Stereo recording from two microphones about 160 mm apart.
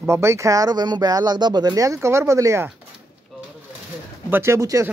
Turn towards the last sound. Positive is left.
turn(degrees=-20)  # may be behind; listen again after turning